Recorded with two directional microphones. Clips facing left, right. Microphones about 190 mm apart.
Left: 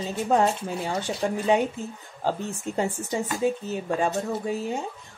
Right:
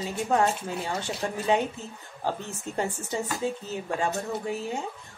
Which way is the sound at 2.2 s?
15° left (ahead or behind).